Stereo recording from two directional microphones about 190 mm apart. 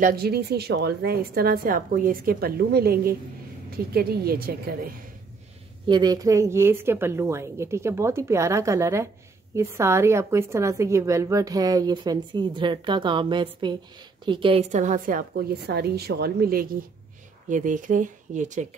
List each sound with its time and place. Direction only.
0.0 s a woman's voice: 55° right (ahead or behind)
5.9 s a woman's voice: 20° right (ahead or behind); by 18.7 s 40° right (ahead or behind)